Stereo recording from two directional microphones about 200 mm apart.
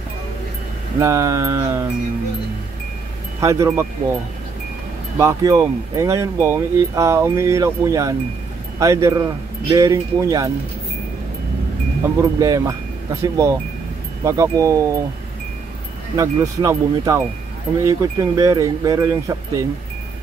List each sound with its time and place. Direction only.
0.9 s speech: 15° right (ahead or behind)
3.3 s speech: 15° right (ahead or behind)
5.2 s speech: 15° right (ahead or behind)
12.2 s speech: 15° right (ahead or behind)
16.2 s speech: 15° right (ahead or behind)